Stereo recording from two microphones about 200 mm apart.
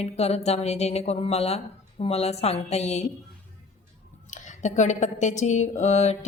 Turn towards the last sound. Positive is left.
turn(degrees=35)  # may be behind; listen again after turning